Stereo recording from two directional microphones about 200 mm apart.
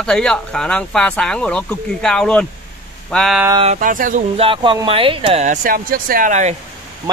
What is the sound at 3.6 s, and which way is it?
Speech, 40° right (ahead or behind).